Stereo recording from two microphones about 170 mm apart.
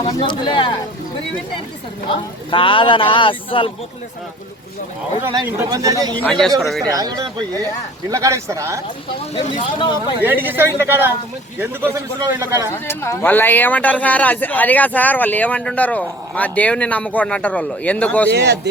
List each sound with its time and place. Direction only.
0.0 s speech: 25° left (ahead or behind)
2.5 s speech: 30° left (ahead or behind)
5.7 s speech: 20° right (ahead or behind)
6.2 s speech: 5° left (ahead or behind)
6.9 s speech: 20° right (ahead or behind)
9.3 s speech: 35° left (ahead or behind)
10.2 s speech: 10° right (ahead or behind)
12.7 s speech: 15° left (ahead or behind)
18.3 s a man's voice: 80° right